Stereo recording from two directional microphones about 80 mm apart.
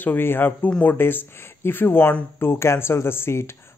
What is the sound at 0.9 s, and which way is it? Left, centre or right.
Speech, left.